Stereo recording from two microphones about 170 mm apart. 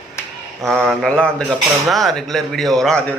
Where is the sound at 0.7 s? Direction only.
Centre (ahead or behind).